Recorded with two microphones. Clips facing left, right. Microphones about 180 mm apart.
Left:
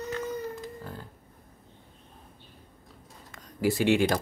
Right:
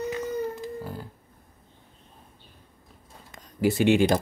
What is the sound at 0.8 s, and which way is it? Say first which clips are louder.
Music: right 5 dB; 10° right (ahead or behind).